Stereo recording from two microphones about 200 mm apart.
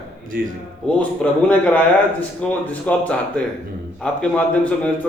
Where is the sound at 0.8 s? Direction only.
5° left (ahead or behind).